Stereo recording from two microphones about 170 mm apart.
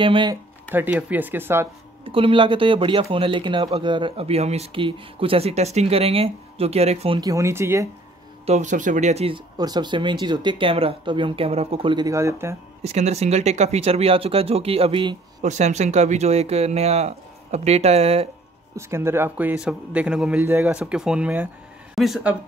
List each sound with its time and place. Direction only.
0.0 s speech: 30° right (ahead or behind)
0.7 s a man's voice: 10° right (ahead or behind)
2.0 s speech: 30° right (ahead or behind)
7.2 s a man's voice: 20° right (ahead or behind)
8.5 s speech: 45° right (ahead or behind)
9.6 s speech: 25° right (ahead or behind)
12.8 s speech: 40° right (ahead or behind)
15.4 s speech: 45° right (ahead or behind)
18.8 s a man's voice: 15° right (ahead or behind)